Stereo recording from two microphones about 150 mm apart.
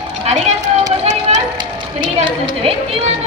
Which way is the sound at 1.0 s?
50° right (ahead or behind).